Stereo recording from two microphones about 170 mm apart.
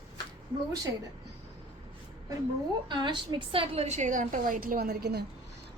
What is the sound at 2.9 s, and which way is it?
A woman's voice, 25° right (ahead or behind).